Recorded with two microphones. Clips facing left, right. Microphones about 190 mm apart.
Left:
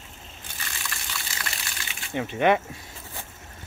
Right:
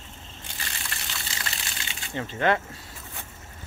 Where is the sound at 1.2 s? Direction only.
25° right (ahead or behind).